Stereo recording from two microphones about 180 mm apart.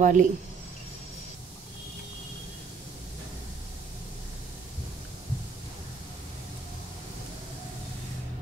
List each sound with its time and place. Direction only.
0.0 s speech: 45° right (ahead or behind)